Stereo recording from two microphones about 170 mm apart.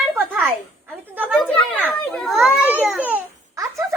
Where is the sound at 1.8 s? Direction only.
Centre (ahead or behind).